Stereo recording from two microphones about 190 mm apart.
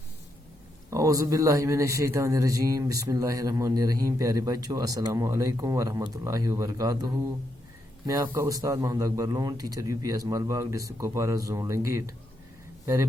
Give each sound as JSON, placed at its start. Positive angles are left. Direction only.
{"t": 0.9, "sound": "a man's voice", "side_deg": -15}